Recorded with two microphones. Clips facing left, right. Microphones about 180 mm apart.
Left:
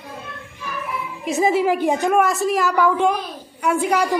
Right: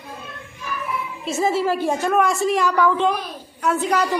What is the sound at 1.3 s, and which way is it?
Speech, 15° left (ahead or behind).